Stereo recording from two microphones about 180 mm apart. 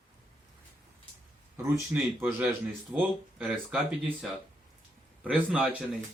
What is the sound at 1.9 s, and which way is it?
A man's voice, 10° right (ahead or behind).